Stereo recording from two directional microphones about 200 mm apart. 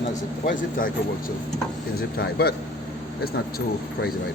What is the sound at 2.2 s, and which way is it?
Speech, 50° left (ahead or behind).